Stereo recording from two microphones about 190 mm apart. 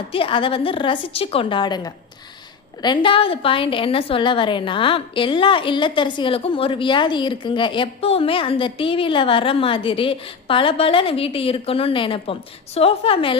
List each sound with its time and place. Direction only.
0.1 s a woman's voice: 30° left (ahead or behind)